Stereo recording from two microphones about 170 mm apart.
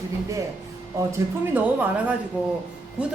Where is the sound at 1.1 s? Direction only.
10° right (ahead or behind).